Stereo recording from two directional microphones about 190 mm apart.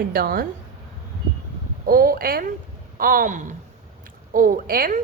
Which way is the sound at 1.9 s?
50° right (ahead or behind).